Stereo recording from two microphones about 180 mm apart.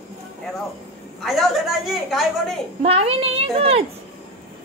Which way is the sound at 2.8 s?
35° right (ahead or behind).